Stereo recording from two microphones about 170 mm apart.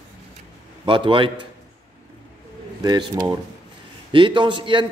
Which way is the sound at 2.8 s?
25° right (ahead or behind).